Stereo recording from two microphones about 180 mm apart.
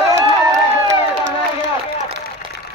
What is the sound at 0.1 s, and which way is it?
Crowd, 15° right (ahead or behind).